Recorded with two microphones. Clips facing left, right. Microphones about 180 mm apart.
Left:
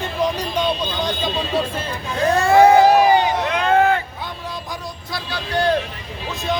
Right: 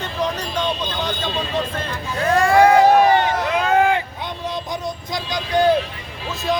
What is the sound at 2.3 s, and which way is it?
Speech, 25° left (ahead or behind).